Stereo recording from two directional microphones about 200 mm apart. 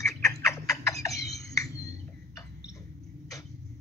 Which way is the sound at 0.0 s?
15° left (ahead or behind).